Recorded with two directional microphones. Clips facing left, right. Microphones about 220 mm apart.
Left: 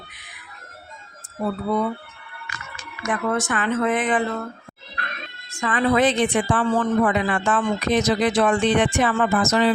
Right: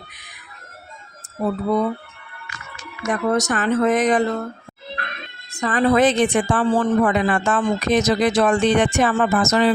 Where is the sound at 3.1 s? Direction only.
40° right (ahead or behind).